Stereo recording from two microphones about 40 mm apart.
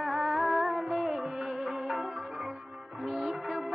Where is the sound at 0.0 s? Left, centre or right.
Centre.